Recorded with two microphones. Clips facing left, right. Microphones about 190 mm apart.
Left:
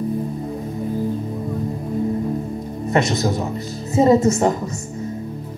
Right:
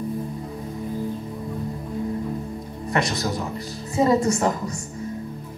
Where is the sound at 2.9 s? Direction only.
25° left (ahead or behind).